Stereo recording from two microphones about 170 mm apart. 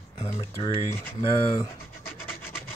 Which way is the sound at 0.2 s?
30° left (ahead or behind).